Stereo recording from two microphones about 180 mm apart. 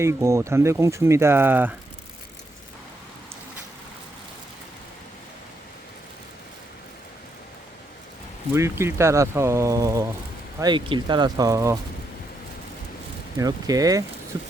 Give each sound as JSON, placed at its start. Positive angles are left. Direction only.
{"t": 0.0, "sound": "speech", "side_deg": -15}
{"t": 8.5, "sound": "speech", "side_deg": -15}
{"t": 13.4, "sound": "speech", "side_deg": -20}